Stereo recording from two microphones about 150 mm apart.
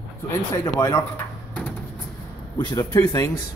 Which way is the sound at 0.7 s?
20° left (ahead or behind).